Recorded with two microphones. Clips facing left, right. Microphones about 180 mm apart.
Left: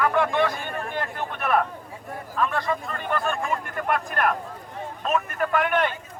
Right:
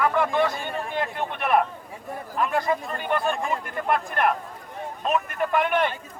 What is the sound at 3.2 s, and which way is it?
Speech, 30° right (ahead or behind).